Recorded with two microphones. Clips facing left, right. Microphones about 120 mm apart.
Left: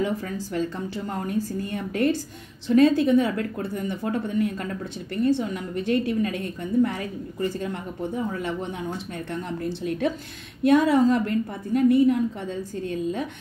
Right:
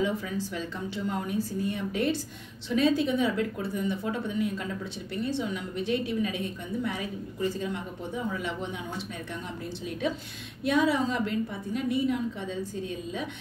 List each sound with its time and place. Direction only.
0.0 s a woman's voice: 50° left (ahead or behind)